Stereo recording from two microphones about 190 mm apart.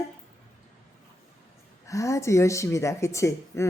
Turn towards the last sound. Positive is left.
turn(degrees=15)  # may be behind; listen again after turning